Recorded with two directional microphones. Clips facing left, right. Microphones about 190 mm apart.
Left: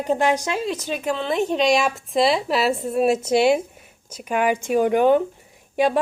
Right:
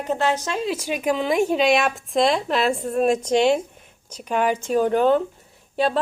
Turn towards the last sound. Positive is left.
turn(degrees=15)  # may be behind; listen again after turning